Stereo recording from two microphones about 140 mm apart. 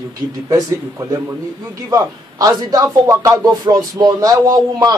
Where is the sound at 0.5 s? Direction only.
25° right (ahead or behind).